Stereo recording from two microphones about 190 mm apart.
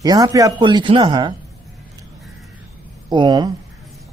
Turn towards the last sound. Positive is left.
turn(degrees=-25)  # may be behind; listen again after turning